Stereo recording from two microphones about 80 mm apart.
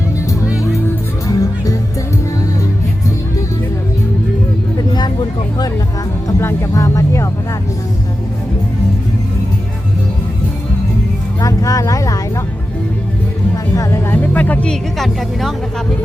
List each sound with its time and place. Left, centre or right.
1.3 s music: left
6.4 s music: left
11.3 s vehicle: left
14.1 s music: left
14.7 s music: centre